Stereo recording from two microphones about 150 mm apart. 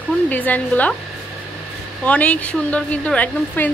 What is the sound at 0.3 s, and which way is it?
Speech, 10° left (ahead or behind).